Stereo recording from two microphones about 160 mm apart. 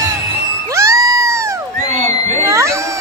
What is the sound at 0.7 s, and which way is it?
Cheering, 20° right (ahead or behind).